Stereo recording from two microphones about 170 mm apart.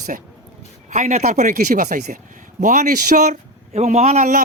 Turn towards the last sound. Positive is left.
turn(degrees=-45)  # may be behind; listen again after turning